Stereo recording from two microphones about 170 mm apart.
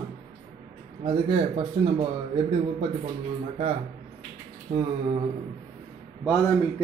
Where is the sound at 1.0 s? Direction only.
30° right (ahead or behind).